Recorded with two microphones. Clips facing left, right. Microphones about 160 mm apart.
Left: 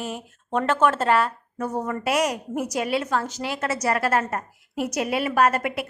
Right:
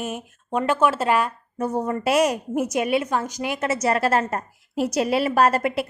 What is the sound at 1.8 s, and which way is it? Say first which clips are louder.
A woman's voice: right 4 dB; 30° right (ahead or behind).